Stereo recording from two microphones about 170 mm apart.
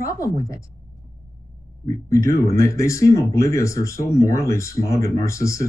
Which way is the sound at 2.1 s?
15° left (ahead or behind).